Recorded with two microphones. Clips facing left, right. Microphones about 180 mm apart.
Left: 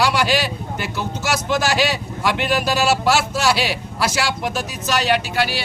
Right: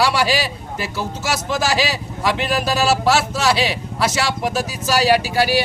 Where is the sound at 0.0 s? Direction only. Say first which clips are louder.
Even; centre (ahead or behind).